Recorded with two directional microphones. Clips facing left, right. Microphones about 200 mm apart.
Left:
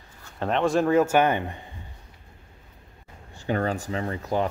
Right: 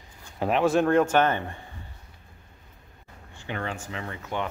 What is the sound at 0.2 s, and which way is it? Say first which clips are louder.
Speech: right 1 dB; 10° right (ahead or behind).